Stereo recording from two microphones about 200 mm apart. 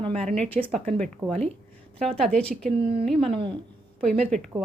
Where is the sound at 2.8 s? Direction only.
30° right (ahead or behind).